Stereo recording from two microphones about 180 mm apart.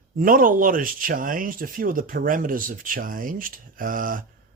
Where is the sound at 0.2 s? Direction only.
50° right (ahead or behind).